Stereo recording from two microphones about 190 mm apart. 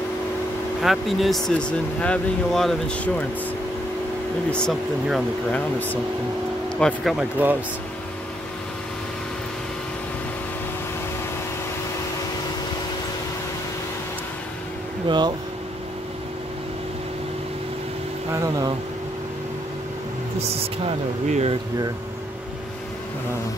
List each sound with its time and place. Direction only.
0.7 s speech: centre (ahead or behind)
4.5 s speech: centre (ahead or behind)
6.8 s speech: centre (ahead or behind)
15.0 s speech: 25° right (ahead or behind)
18.3 s a sound: 20° right (ahead or behind)
20.8 s speech: 35° right (ahead or behind)